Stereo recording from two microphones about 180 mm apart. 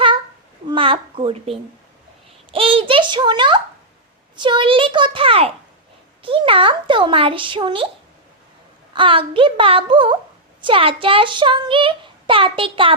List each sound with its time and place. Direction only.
0.7 s a child's voice: 30° right (ahead or behind)
8.9 s a child's voice: 30° right (ahead or behind)